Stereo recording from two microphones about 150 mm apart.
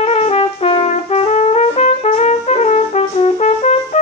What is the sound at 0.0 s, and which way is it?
Trumpet, 45° left (ahead or behind).